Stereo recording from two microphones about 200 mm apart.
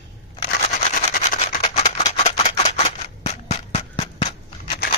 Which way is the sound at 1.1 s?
40° left (ahead or behind).